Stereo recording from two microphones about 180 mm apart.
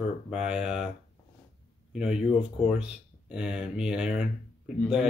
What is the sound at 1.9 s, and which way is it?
Speech, 5° right (ahead or behind).